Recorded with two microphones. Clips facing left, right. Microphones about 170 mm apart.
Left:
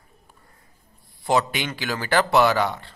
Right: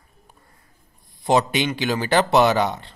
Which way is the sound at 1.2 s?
20° right (ahead or behind).